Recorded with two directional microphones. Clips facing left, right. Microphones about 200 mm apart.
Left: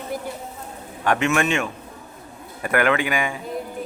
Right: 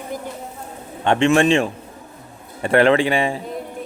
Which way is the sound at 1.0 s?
30° right (ahead or behind).